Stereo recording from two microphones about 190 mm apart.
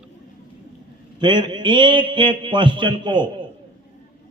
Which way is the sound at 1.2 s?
25° right (ahead or behind).